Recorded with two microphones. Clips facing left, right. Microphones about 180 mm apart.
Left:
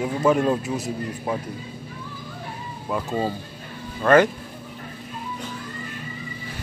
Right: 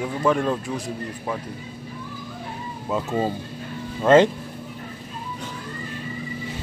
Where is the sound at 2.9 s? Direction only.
20° right (ahead or behind).